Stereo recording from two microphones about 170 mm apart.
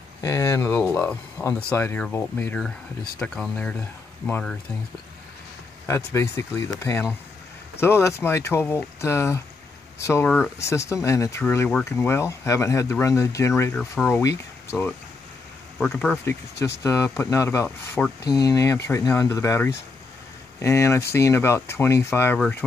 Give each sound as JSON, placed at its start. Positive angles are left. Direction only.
{"t": 0.2, "sound": "speech", "side_deg": 20}
{"t": 5.9, "sound": "speech", "side_deg": 15}
{"t": 10.2, "sound": "speech", "side_deg": 5}
{"t": 10.6, "sound": "speech", "side_deg": 15}
{"t": 16.8, "sound": "speech", "side_deg": 15}